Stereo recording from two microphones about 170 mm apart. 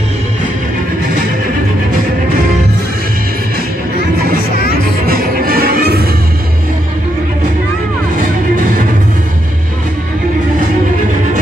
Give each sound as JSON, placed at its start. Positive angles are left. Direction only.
{"t": 5.0, "sound": "music", "side_deg": -60}
{"t": 8.2, "sound": "music", "side_deg": -50}